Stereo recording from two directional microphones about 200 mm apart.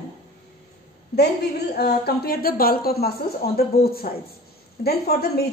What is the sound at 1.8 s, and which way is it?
Speech, 50° left (ahead or behind).